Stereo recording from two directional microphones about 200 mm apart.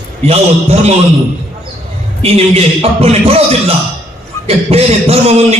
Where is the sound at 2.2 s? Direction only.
30° right (ahead or behind).